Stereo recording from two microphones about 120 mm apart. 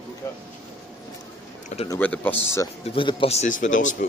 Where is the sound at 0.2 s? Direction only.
25° left (ahead or behind).